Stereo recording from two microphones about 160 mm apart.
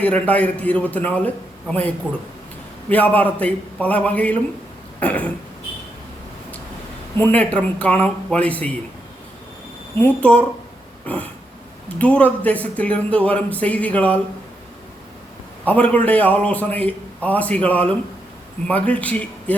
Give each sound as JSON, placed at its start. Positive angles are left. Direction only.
{"t": 0.0, "sound": "speech", "side_deg": 10}
{"t": 2.9, "sound": "speech", "side_deg": 10}
{"t": 4.9, "sound": "throat clearing", "side_deg": 10}
{"t": 7.2, "sound": "speech", "side_deg": 10}
{"t": 10.0, "sound": "speech", "side_deg": 10}
{"t": 11.0, "sound": "a sound", "side_deg": 10}
{"t": 11.9, "sound": "speech", "side_deg": 10}
{"t": 15.6, "sound": "speech", "side_deg": 10}